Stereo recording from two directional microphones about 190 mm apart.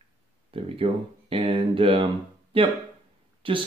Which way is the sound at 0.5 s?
30° right (ahead or behind).